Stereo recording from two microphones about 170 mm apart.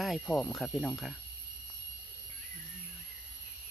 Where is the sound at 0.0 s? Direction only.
Centre (ahead or behind).